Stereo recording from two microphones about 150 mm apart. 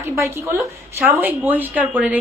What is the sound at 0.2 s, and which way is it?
A woman's voice, 20° right (ahead or behind).